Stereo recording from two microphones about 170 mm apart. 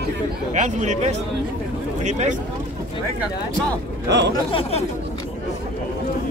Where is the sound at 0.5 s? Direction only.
45° right (ahead or behind).